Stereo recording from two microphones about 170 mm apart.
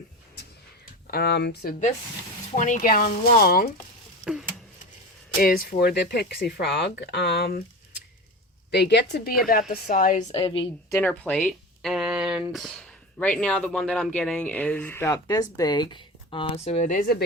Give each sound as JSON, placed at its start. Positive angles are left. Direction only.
{"t": 1.0, "sound": "speech", "side_deg": 65}
{"t": 2.6, "sound": "speech", "side_deg": 45}
{"t": 4.2, "sound": "a sound", "side_deg": -5}
{"t": 5.4, "sound": "speech", "side_deg": 60}
{"t": 8.7, "sound": "speech", "side_deg": 85}
{"t": 9.5, "sound": "a woman's voice", "side_deg": 50}
{"t": 10.3, "sound": "a woman's voice", "side_deg": 30}
{"t": 10.8, "sound": "a sound", "side_deg": 15}
{"t": 12.5, "sound": "speech", "side_deg": 0}